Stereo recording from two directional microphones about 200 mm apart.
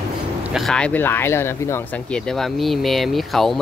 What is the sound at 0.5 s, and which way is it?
Speech, centre (ahead or behind).